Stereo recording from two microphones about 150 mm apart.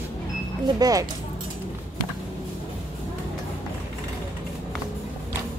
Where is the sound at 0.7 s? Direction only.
25° right (ahead or behind).